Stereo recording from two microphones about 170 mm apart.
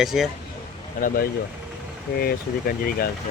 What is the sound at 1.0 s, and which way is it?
Speech, 55° left (ahead or behind).